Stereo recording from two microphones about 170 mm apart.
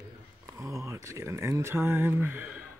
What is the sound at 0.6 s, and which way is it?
Speech, 20° right (ahead or behind).